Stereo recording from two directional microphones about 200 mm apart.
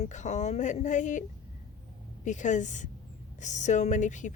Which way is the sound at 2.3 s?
40° left (ahead or behind).